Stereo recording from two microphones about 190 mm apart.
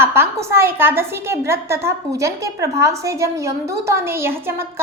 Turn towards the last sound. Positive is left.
turn(degrees=-10)  # may be behind; listen again after turning